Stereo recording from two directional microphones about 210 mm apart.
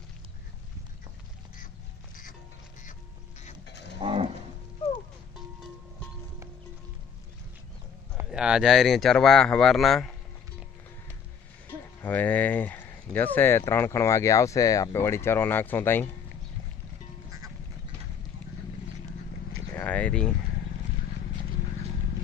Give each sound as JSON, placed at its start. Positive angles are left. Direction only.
{"t": 3.6, "sound": "livestock", "side_deg": 55}
{"t": 4.0, "sound": "cattle", "side_deg": -25}
{"t": 4.8, "sound": "music", "side_deg": 25}
{"t": 8.3, "sound": "speech", "side_deg": -5}
{"t": 12.0, "sound": "speech", "side_deg": 10}
{"t": 19.7, "sound": "a sound", "side_deg": 5}